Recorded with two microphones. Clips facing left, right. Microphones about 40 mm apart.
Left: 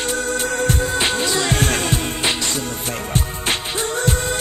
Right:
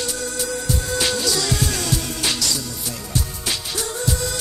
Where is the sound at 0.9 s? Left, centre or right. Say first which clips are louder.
Left 2 dB; left.